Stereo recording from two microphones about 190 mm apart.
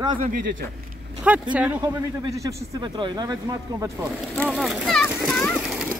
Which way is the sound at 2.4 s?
20° right (ahead or behind).